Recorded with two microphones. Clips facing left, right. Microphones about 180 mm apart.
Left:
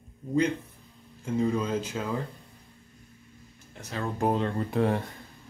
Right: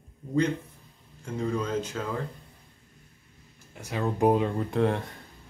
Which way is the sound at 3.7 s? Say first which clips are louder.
Right 3 dB; 10° right (ahead or behind).